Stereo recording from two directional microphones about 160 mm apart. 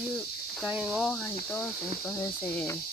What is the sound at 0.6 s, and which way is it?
Speech, 5° right (ahead or behind).